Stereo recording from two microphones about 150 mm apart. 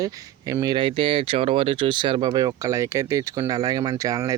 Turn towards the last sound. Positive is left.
turn(degrees=-20)  # may be behind; listen again after turning